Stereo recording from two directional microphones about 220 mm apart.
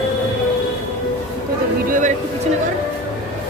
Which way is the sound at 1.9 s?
35° right (ahead or behind).